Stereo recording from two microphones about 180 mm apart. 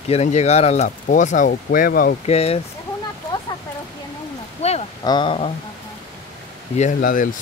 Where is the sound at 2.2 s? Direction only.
35° left (ahead or behind).